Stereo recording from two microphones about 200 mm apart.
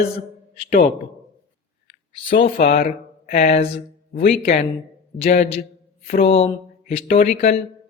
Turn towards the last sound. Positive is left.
turn(degrees=35)  # may be behind; listen again after turning